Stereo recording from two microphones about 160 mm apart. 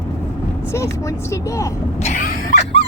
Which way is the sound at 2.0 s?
55° left (ahead or behind).